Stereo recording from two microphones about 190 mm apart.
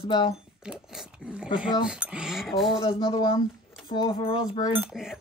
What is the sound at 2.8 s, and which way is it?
Speech, 30° left (ahead or behind).